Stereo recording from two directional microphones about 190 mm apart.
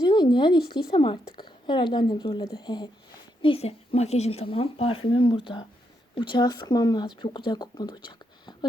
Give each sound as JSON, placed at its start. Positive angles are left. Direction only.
{"t": 0.0, "sound": "speech", "side_deg": 25}